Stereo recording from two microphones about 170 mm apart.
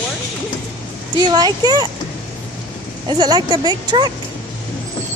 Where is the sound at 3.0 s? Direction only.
25° right (ahead or behind).